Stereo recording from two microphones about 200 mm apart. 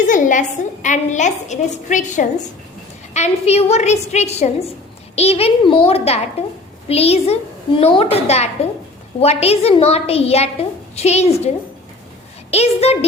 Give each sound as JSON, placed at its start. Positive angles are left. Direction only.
{"t": 0.1, "sound": "a woman's voice", "side_deg": 40}